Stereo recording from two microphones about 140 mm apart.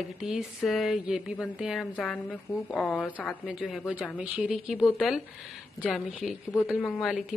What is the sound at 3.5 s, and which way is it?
A woman's voice, 5° right (ahead or behind).